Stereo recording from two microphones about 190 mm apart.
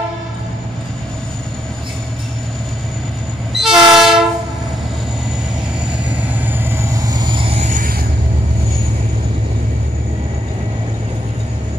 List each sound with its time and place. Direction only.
3.5 s train: centre (ahead or behind)
6.2 s vehicle: 10° right (ahead or behind); by 8.0 s 45° right (ahead or behind)